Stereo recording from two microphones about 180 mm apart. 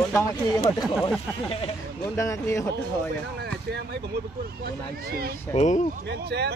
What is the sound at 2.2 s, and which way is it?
Speech, 15° left (ahead or behind).